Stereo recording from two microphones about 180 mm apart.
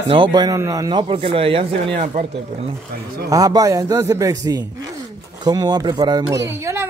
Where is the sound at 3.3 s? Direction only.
20° right (ahead or behind).